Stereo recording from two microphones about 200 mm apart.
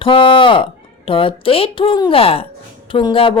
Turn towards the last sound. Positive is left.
turn(degrees=25)  # may be behind; listen again after turning